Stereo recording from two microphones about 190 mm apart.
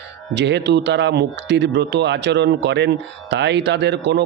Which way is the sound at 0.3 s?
65° right (ahead or behind).